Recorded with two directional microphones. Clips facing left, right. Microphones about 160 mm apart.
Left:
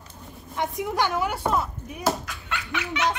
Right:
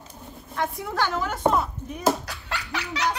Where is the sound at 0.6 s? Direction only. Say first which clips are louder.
Left 1 dB; 15° left (ahead or behind).